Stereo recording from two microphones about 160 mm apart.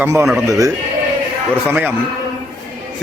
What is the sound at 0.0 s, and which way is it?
Speech, 15° right (ahead or behind).